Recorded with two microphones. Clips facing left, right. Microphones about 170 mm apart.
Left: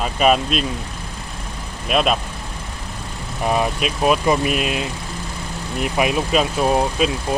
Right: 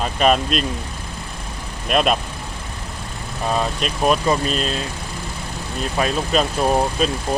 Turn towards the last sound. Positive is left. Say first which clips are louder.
# left 1 dB
turn(degrees=5)  # may be behind; listen again after turning